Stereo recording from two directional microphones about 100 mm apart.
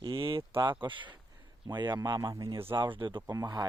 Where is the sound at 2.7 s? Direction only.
55° right (ahead or behind).